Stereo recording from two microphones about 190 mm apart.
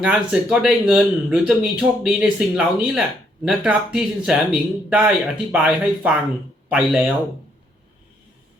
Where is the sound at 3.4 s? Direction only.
5° right (ahead or behind).